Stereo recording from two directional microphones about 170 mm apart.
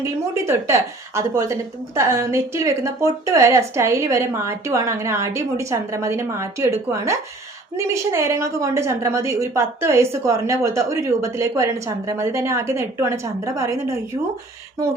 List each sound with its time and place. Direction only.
0.0 s a woman's voice: 15° right (ahead or behind)